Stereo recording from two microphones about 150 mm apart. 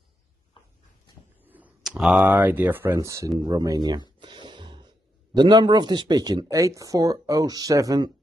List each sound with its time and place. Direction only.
1.5 s a man's voice: 5° right (ahead or behind); by 8.1 s 25° right (ahead or behind)